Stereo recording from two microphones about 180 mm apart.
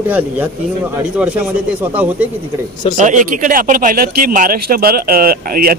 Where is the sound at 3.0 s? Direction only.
45° right (ahead or behind).